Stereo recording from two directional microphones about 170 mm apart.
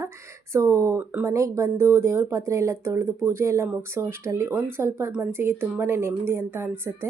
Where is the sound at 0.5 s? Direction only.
15° right (ahead or behind).